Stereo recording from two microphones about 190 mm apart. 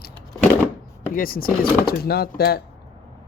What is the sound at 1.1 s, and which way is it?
Speech, 50° left (ahead or behind).